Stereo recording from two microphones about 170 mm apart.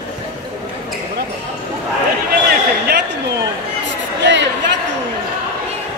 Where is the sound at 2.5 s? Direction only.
65° right (ahead or behind).